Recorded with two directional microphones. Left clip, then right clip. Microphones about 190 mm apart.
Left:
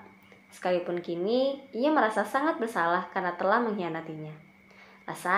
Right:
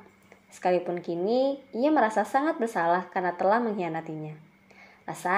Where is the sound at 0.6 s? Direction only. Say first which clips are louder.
Right 2 dB; 40° right (ahead or behind).